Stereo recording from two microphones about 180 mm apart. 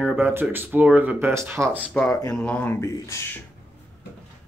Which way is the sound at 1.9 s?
10° left (ahead or behind).